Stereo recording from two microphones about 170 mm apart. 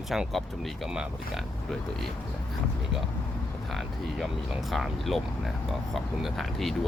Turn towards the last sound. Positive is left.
turn(degrees=0)  # may be behind; listen again after turning